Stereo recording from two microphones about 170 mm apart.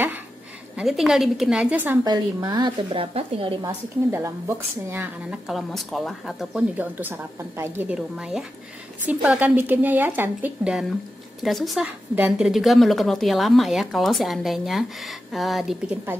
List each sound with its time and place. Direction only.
0.7 s a woman's voice: 5° right (ahead or behind)
2.0 s a woman's voice: 25° right (ahead or behind)
3.6 s a woman's voice: 15° right (ahead or behind)
5.5 s a woman's voice: centre (ahead or behind)